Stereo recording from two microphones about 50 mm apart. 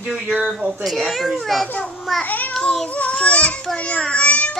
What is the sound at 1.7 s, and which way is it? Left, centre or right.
Speech, left.